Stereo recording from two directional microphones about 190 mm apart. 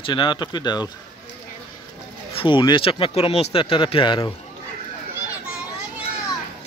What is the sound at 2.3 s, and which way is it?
Speech, 25° left (ahead or behind).